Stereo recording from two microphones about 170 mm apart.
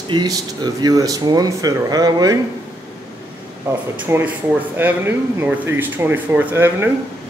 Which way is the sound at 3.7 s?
10° right (ahead or behind).